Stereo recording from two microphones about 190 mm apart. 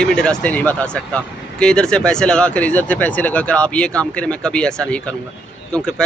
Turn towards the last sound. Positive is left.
turn(degrees=5)  # may be behind; listen again after turning